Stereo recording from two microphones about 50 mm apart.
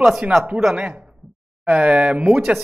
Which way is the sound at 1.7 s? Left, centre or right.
Right.